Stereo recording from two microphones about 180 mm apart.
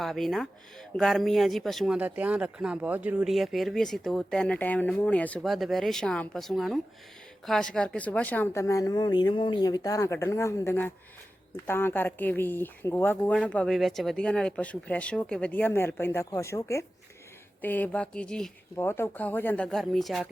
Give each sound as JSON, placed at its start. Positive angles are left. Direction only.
{"t": 0.0, "sound": "speech", "side_deg": 0}